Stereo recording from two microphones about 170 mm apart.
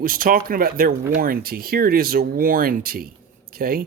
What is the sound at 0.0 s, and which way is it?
Speech, 55° right (ahead or behind).